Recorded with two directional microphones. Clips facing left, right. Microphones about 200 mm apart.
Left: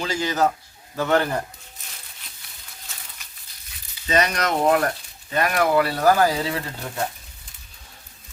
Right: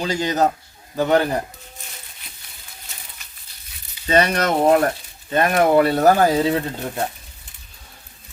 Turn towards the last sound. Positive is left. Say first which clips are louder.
# right 6 dB
turn(degrees=-25)  # may be behind; listen again after turning